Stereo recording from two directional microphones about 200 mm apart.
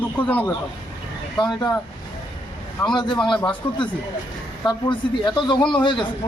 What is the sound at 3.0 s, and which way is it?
Speech, 20° left (ahead or behind).